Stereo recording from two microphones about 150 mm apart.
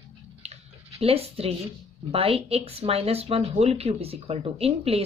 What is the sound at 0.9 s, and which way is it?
Speech, 40° right (ahead or behind).